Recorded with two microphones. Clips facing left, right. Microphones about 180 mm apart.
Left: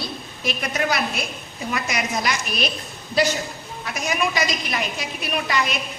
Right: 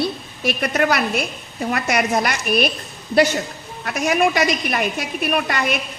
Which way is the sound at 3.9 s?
55° right (ahead or behind).